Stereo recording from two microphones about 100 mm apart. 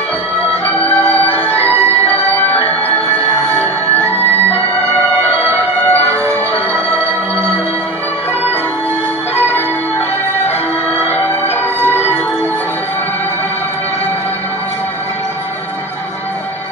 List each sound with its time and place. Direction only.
0.7 s music: 15° left (ahead or behind)
5.9 s music: 15° left (ahead or behind)
11.1 s music: 20° left (ahead or behind)